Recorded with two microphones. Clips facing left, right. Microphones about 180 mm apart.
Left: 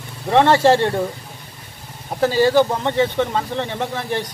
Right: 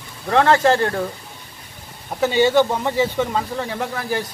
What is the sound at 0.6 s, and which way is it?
Speech, 25° left (ahead or behind).